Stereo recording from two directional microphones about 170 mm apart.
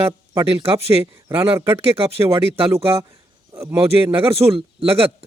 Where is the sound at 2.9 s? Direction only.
20° right (ahead or behind).